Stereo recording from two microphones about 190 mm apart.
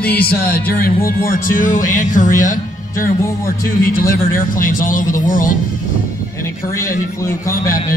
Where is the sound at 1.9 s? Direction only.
40° left (ahead or behind).